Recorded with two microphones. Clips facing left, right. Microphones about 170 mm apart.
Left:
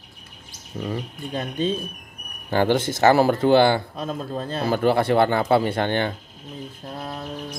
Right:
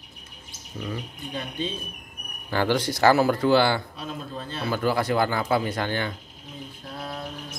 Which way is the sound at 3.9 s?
45° left (ahead or behind).